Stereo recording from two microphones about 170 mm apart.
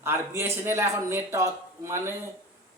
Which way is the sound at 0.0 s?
15° right (ahead or behind).